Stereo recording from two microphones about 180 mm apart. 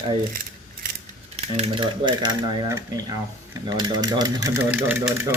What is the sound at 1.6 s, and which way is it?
Speech, 25° right (ahead or behind).